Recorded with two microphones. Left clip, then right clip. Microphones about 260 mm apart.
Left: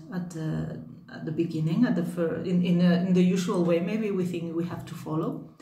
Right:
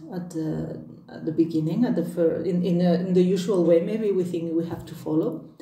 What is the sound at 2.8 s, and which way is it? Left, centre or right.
Speech, left.